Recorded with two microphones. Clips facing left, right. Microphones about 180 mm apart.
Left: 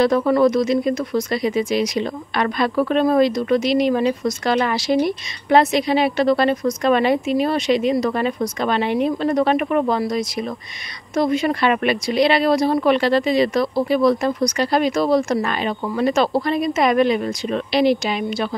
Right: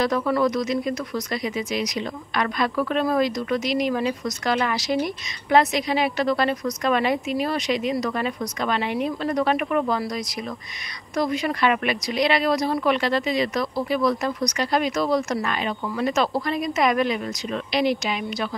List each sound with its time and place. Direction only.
0.0 s a woman's voice: 30° left (ahead or behind)